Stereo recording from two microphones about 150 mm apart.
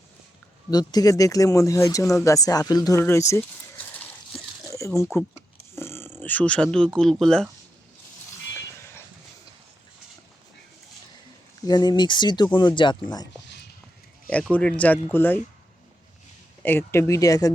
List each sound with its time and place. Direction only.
0.7 s speech: 25° left (ahead or behind)
2.2 s a sound: 25° left (ahead or behind)
5.7 s speech: 15° left (ahead or behind)
11.6 s speech: 25° left (ahead or behind)
14.5 s speech: 10° left (ahead or behind)
16.6 s speech: 15° left (ahead or behind)